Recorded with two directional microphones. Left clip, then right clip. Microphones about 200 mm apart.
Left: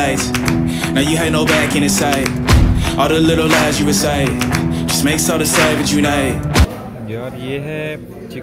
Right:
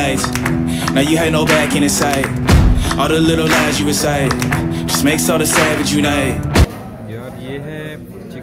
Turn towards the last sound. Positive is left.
turn(degrees=15)  # may be behind; listen again after turning